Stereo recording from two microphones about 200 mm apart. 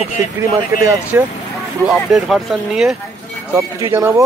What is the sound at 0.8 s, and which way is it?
Speech, 10° right (ahead or behind).